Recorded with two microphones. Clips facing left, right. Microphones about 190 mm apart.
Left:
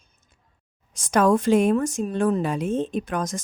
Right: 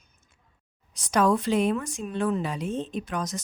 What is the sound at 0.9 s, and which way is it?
Speech, 50° left (ahead or behind).